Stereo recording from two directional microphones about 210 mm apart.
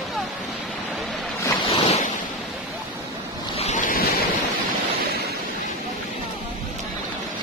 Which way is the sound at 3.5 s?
35° left (ahead or behind).